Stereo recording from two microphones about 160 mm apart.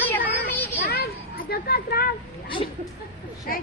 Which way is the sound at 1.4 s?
75° left (ahead or behind).